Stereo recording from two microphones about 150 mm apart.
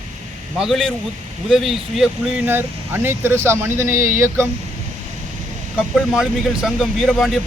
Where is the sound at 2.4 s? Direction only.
15° right (ahead or behind).